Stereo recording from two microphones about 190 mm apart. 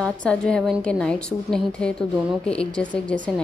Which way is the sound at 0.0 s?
5° left (ahead or behind).